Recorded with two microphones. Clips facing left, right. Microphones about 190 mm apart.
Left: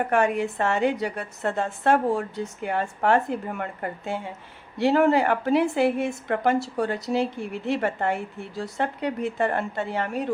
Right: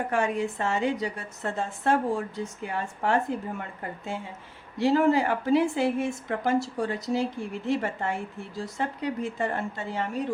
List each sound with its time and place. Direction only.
0.1 s a woman's voice: 65° left (ahead or behind)